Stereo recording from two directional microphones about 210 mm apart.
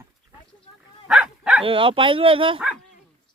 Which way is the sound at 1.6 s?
25° right (ahead or behind).